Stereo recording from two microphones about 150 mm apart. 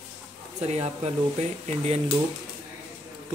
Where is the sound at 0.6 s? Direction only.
45° right (ahead or behind).